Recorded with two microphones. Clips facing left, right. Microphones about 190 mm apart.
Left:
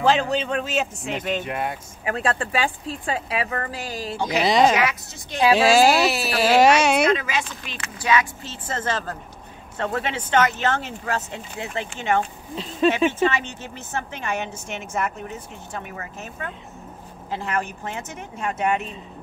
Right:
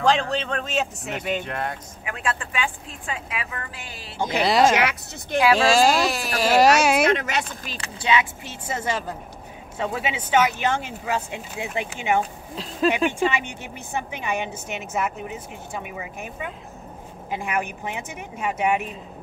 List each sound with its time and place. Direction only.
0.0 s speech: 5° left (ahead or behind)
2.0 s a woman's voice: 35° left (ahead or behind)
4.4 s speech: centre (ahead or behind)
7.6 s speech: 35° right (ahead or behind)
8.6 s a woman's voice: 10° right (ahead or behind)